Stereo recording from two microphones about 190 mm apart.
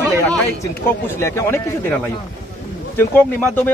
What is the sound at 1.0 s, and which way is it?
Speech, 15° left (ahead or behind).